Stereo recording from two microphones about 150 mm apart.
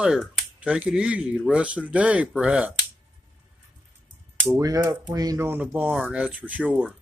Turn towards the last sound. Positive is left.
turn(degrees=-10)  # may be behind; listen again after turning